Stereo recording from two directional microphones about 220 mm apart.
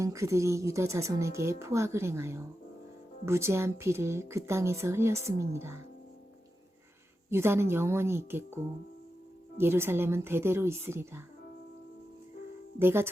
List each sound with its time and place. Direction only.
0.0 s a woman's voice: 15° right (ahead or behind)
7.3 s a woman's voice: 10° right (ahead or behind)
9.6 s a woman's voice: 10° right (ahead or behind)
12.8 s a woman's voice: 10° right (ahead or behind)